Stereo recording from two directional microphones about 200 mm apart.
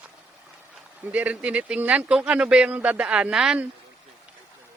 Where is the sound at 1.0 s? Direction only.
10° right (ahead or behind).